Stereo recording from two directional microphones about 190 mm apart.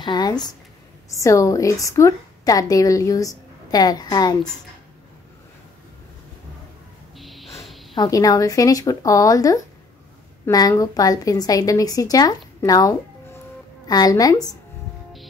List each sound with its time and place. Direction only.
0.0 s a woman's voice: 20° left (ahead or behind)
7.2 s music: centre (ahead or behind)
7.9 s a woman's voice: 20° left (ahead or behind)